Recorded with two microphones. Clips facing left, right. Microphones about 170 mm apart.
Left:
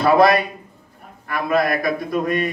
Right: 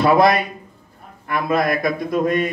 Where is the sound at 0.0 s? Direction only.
20° right (ahead or behind).